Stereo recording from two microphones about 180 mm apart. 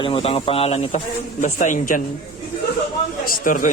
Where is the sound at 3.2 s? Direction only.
50° left (ahead or behind).